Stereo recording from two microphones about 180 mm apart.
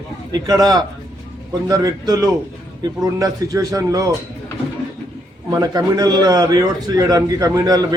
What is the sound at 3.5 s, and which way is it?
Speech, 20° right (ahead or behind).